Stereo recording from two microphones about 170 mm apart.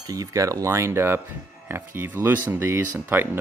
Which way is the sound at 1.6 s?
15° right (ahead or behind).